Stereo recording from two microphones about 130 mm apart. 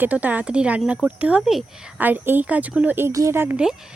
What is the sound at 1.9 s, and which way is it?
Speech, 15° right (ahead or behind).